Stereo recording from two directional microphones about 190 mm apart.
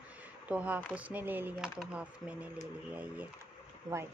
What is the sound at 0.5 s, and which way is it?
A woman's voice, 5° right (ahead or behind).